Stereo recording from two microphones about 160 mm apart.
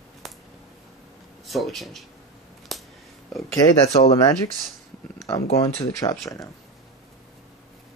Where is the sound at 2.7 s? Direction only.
Centre (ahead or behind).